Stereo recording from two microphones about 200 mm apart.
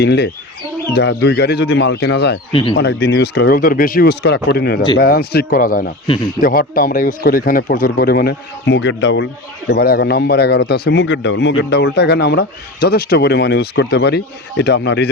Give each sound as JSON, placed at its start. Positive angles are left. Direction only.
{"t": 0.0, "sound": "a man's voice", "side_deg": 55}
{"t": 2.5, "sound": "speech", "side_deg": 25}
{"t": 2.7, "sound": "speech", "side_deg": 55}
{"t": 6.1, "sound": "speech", "side_deg": 20}
{"t": 6.4, "sound": "speech", "side_deg": 45}
{"t": 9.6, "sound": "a man's voice", "side_deg": 50}